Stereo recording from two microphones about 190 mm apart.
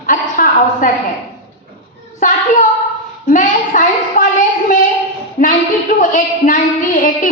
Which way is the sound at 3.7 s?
45° left (ahead or behind).